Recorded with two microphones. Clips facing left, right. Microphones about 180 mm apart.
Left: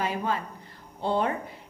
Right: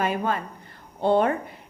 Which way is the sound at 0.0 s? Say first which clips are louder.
Right 3 dB; 55° right (ahead or behind).